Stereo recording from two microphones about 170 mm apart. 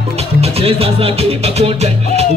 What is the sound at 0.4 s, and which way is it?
Music, 35° right (ahead or behind).